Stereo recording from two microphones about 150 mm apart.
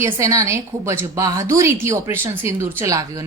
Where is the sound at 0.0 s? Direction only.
20° right (ahead or behind).